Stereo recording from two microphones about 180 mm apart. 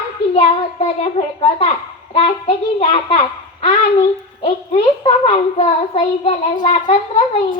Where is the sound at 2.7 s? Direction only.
35° left (ahead or behind).